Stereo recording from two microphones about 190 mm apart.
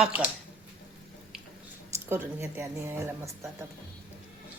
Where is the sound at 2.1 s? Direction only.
15° right (ahead or behind).